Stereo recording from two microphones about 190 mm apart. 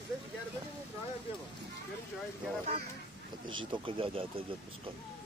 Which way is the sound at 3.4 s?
25° right (ahead or behind).